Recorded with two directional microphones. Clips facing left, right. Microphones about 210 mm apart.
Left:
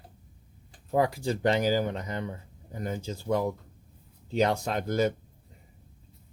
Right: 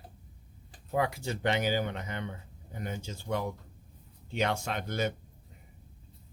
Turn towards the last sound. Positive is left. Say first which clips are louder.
# left 6 dB
turn(degrees=35)  # may be behind; listen again after turning